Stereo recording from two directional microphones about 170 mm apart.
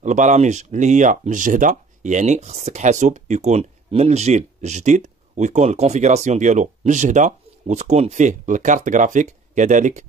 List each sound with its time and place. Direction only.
0.0 s speech: 45° right (ahead or behind)